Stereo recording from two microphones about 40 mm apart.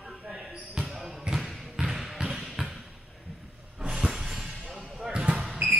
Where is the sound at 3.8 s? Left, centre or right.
Right.